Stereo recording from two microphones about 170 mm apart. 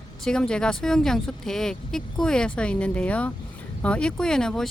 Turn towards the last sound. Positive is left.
turn(degrees=5)  # may be behind; listen again after turning